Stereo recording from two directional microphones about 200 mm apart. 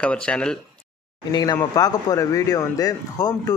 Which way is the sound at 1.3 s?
20° left (ahead or behind).